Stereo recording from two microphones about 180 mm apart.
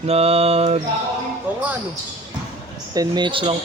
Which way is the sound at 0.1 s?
35° right (ahead or behind).